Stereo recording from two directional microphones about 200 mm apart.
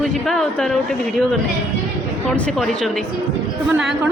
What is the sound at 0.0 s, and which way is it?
A woman's voice, centre (ahead or behind).